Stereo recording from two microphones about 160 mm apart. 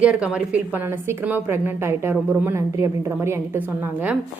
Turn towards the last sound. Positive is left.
turn(degrees=-10)  # may be behind; listen again after turning